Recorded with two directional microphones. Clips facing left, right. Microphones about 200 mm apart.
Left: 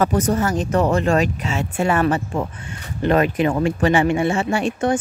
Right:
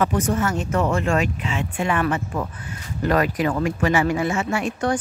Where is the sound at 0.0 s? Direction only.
40° left (ahead or behind).